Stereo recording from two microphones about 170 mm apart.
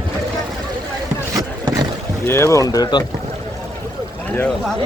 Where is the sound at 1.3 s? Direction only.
20° right (ahead or behind).